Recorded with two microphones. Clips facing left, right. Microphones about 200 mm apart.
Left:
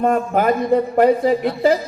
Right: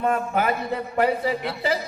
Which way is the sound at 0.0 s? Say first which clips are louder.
Left 6 dB; 45° left (ahead or behind).